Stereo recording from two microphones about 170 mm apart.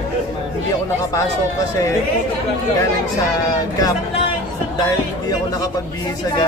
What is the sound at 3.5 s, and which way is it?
Speech, 20° left (ahead or behind).